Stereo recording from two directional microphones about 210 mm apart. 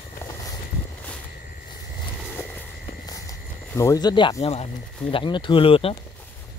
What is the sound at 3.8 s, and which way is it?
Speech, 15° left (ahead or behind).